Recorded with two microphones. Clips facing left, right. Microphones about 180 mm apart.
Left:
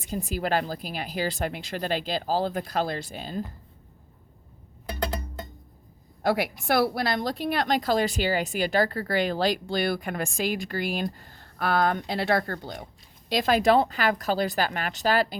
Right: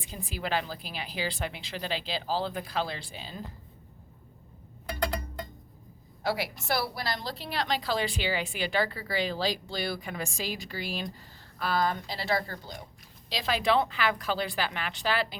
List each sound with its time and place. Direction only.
0.0 s a woman's voice: 45° left (ahead or behind)
6.2 s a woman's voice: 55° left (ahead or behind)
13.3 s a woman's voice: 50° left (ahead or behind)